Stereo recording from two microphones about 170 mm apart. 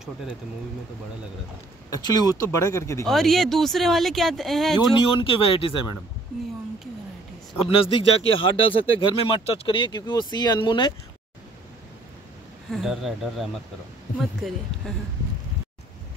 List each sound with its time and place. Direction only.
1.9 s speech: 25° left (ahead or behind)
3.1 s speech: centre (ahead or behind)
5.0 s speech: 30° left (ahead or behind)
7.7 s speech: 35° left (ahead or behind)
12.7 s speech: centre (ahead or behind)